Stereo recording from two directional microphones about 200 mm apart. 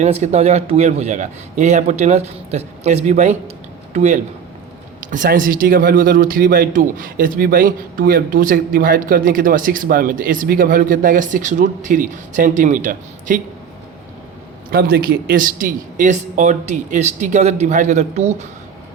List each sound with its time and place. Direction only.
0.0 s speech: 35° right (ahead or behind)
14.7 s speech: 50° right (ahead or behind)